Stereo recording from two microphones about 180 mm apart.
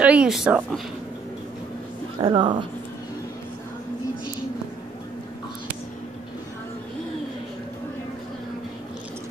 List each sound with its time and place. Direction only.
0.0 s speech: 5° right (ahead or behind)
2.1 s a woman's voice: 30° right (ahead or behind)